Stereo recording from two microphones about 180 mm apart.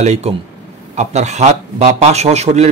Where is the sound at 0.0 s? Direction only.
35° right (ahead or behind).